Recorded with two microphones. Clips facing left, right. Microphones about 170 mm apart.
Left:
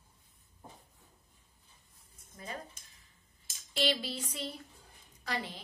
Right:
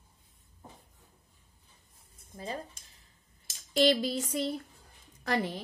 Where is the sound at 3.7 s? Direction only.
45° right (ahead or behind).